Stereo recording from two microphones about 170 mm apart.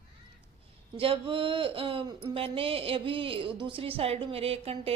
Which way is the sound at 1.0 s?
30° right (ahead or behind).